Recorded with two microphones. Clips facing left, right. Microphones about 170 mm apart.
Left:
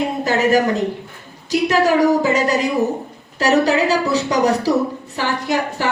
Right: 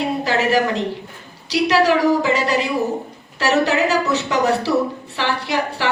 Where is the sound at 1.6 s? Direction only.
45° left (ahead or behind).